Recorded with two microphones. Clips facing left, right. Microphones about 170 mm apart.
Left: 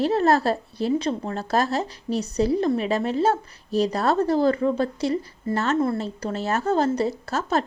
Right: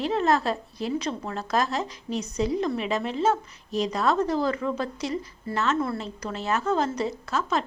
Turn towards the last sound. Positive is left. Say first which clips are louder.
# left 3 dB
turn(degrees=40)  # may be behind; listen again after turning